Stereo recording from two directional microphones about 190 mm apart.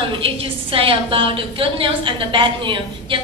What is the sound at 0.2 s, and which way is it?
A woman's voice, 30° right (ahead or behind).